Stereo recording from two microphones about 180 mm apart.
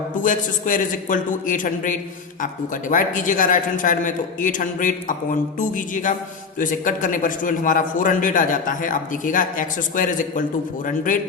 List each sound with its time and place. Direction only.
0.2 s a man's voice: 45° left (ahead or behind)